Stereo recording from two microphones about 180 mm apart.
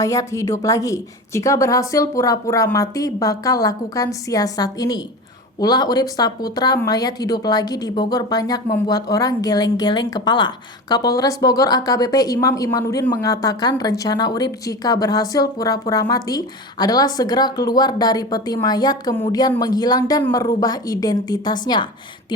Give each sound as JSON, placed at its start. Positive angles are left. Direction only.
{"t": 0.0, "sound": "a woman's voice", "side_deg": 15}